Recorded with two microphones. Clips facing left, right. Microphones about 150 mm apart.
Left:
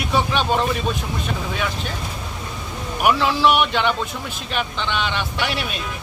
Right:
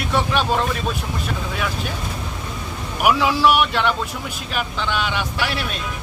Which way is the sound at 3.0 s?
5° right (ahead or behind).